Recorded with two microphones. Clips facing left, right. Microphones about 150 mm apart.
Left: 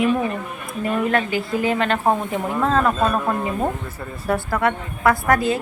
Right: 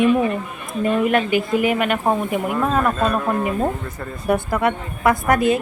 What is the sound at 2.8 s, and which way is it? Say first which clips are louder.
Speech: even; 10° left (ahead or behind).